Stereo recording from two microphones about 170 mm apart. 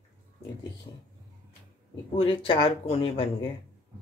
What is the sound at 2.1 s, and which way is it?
Speech, 35° left (ahead or behind).